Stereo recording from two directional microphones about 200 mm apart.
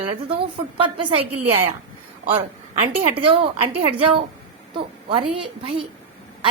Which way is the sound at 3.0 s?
30° right (ahead or behind).